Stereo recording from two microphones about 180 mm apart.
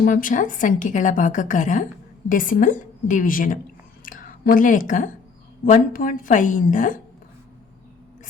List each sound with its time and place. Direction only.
0.0 s a woman's voice: 50° left (ahead or behind)